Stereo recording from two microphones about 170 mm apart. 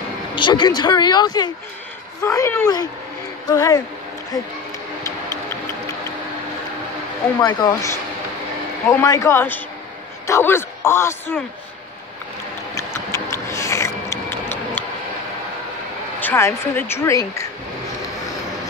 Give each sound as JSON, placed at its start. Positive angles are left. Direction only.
{"t": 0.4, "sound": "speech", "side_deg": 25}
{"t": 7.3, "sound": "speech", "side_deg": 25}
{"t": 9.0, "sound": "speech", "side_deg": 20}
{"t": 12.7, "sound": "a sound", "side_deg": 15}
{"t": 14.3, "sound": "tick-tock", "side_deg": 10}
{"t": 16.2, "sound": "speech", "side_deg": 15}